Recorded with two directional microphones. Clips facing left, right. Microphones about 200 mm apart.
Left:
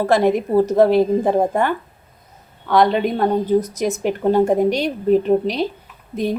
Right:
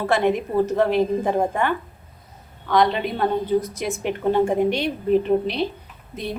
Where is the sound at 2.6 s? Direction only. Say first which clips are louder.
Left 4 dB; 50° left (ahead or behind).